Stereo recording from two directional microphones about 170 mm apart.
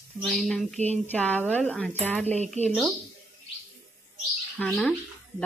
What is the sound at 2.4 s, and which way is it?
Speech, 40° right (ahead or behind).